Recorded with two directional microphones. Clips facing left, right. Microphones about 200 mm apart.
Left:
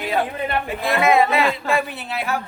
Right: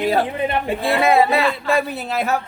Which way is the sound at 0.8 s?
30° right (ahead or behind).